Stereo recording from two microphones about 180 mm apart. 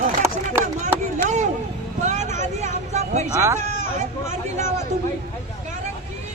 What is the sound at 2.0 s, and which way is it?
Vehicle, 40° right (ahead or behind).